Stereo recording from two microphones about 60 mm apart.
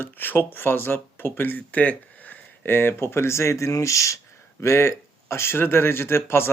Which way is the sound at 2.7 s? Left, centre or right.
Left.